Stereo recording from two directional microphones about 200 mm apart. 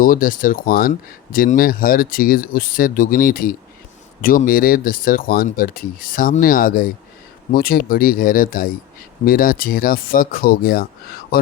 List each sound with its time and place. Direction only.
0.0 s speech: 45° left (ahead or behind)